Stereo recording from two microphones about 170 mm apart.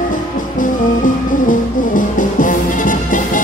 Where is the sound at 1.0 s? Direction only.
50° left (ahead or behind).